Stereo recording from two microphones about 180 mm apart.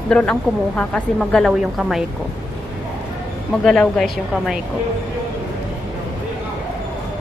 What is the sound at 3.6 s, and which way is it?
A woman's voice, 5° left (ahead or behind).